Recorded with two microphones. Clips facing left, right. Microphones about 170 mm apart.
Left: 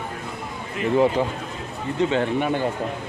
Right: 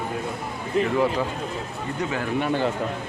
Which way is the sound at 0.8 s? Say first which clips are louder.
Right 3 dB; 35° right (ahead or behind).